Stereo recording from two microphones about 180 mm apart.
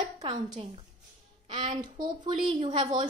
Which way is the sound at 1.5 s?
25° right (ahead or behind).